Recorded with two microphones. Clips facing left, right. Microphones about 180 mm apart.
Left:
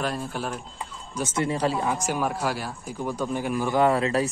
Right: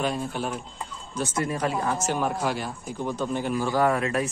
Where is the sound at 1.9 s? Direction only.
10° left (ahead or behind).